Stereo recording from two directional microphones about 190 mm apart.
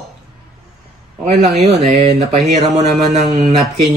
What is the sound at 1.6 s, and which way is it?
A man's voice, 40° right (ahead or behind).